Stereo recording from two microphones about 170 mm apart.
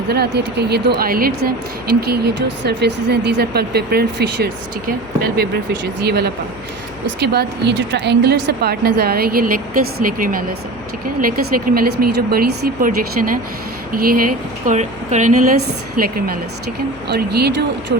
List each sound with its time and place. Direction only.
0.1 s a woman's voice: 70° right (ahead or behind)
2.0 s a woman's voice: 70° right (ahead or behind)
6.1 s a woman's voice: 70° right (ahead or behind)
17.1 s a woman's voice: 70° right (ahead or behind)